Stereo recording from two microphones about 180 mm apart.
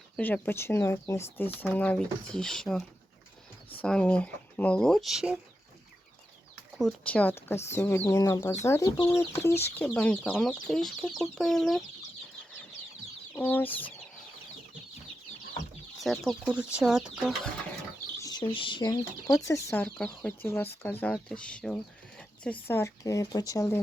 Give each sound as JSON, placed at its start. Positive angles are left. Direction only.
{"t": 0.2, "sound": "speech", "side_deg": 10}
{"t": 6.7, "sound": "speech", "side_deg": 5}
{"t": 13.3, "sound": "speech", "side_deg": 10}
{"t": 16.0, "sound": "speech", "side_deg": 0}
{"t": 18.2, "sound": "speech", "side_deg": 20}